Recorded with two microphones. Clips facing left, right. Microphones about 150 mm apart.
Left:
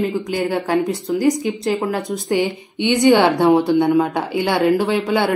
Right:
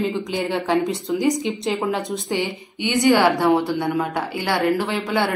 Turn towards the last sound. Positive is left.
turn(degrees=20)  # may be behind; listen again after turning